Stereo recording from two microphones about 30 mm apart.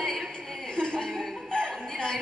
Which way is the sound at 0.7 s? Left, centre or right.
Left.